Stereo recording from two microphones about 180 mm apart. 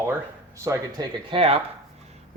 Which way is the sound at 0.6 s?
15° right (ahead or behind).